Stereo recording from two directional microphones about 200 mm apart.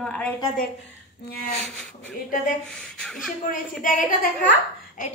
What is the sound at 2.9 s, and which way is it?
Speech, centre (ahead or behind).